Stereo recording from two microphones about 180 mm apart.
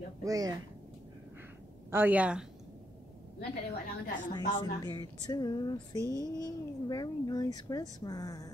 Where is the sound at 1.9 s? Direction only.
10° right (ahead or behind).